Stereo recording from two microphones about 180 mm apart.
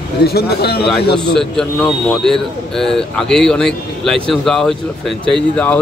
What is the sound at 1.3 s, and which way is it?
Speech, 5° left (ahead or behind).